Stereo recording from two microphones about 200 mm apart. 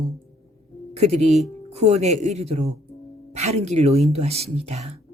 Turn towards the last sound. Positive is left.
turn(degrees=-35)  # may be behind; listen again after turning